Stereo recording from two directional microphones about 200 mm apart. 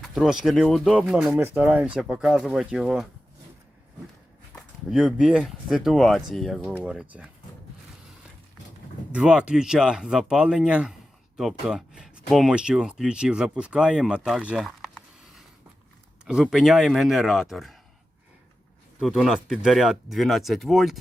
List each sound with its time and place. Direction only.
0.0 s speech: centre (ahead or behind)
4.5 s speech: centre (ahead or behind)
9.1 s speech: 5° right (ahead or behind)
18.9 s speech: centre (ahead or behind)